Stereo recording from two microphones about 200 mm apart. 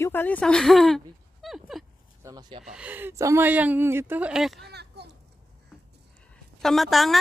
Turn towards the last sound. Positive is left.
turn(degrees=0)  # may be behind; listen again after turning